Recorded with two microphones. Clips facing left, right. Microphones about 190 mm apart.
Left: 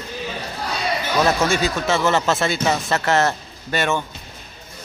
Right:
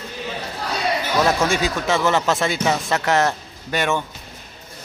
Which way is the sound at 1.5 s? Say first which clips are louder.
Even; 15° right (ahead or behind).